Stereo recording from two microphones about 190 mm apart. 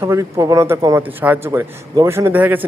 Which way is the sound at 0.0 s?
15° right (ahead or behind).